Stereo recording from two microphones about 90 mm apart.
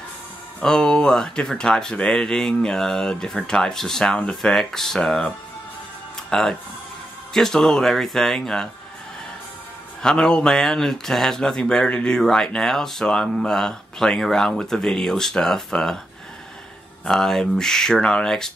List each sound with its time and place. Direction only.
0.6 s speech: 10° left (ahead or behind)
6.3 s speech: 5° left (ahead or behind)
10.0 s speech: 10° left (ahead or behind)
17.0 s speech: 5° left (ahead or behind)